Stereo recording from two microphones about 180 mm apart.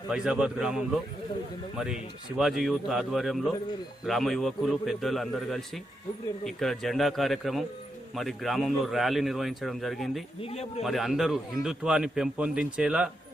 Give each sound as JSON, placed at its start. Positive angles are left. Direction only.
{"t": 0.1, "sound": "a man's voice", "side_deg": -5}
{"t": 2.4, "sound": "a man's voice", "side_deg": 0}
{"t": 10.4, "sound": "speech", "side_deg": 35}
{"t": 10.8, "sound": "a man's voice", "side_deg": 0}